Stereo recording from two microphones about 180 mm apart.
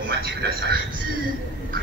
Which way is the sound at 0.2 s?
65° right (ahead or behind).